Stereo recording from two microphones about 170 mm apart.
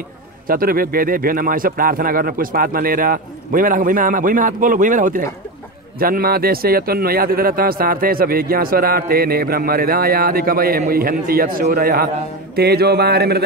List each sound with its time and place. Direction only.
0.5 s speech: 60° right (ahead or behind)